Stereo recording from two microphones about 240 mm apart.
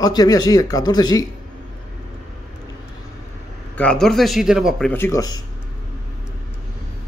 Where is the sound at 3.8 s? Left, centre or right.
Centre.